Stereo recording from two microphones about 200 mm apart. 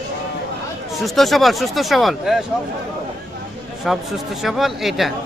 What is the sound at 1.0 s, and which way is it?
Speech, centre (ahead or behind).